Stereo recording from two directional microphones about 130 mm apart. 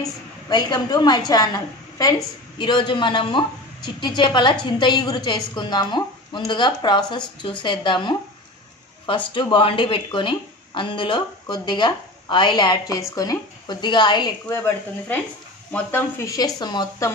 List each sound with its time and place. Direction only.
0.0 s a woman's voice: 30° left (ahead or behind)
14.5 s speech: 15° left (ahead or behind)
16.2 s a woman's voice: 25° left (ahead or behind)